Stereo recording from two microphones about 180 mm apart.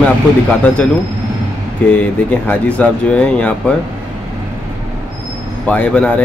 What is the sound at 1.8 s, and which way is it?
Speech, 5° left (ahead or behind).